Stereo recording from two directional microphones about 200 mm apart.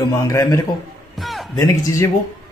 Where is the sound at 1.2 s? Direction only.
Centre (ahead or behind).